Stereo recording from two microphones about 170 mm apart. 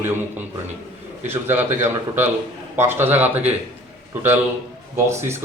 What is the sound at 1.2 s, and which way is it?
A man's voice, 10° right (ahead or behind).